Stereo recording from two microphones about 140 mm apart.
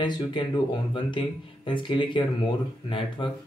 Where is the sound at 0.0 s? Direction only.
35° left (ahead or behind).